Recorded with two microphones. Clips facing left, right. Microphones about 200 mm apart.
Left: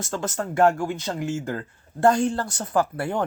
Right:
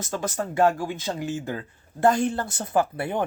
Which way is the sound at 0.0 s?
15° right (ahead or behind).